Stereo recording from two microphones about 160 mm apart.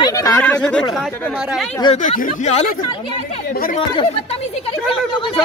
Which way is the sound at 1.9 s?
50° left (ahead or behind).